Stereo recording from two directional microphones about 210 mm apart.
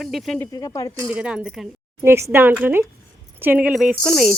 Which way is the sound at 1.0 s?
5° right (ahead or behind).